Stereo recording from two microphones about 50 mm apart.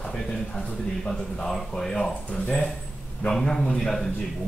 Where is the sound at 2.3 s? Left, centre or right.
Left.